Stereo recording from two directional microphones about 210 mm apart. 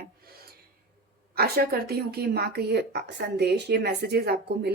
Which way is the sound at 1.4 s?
45° right (ahead or behind).